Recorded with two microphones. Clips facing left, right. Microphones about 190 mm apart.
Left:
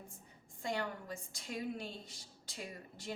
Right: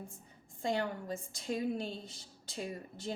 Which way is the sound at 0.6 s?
25° right (ahead or behind).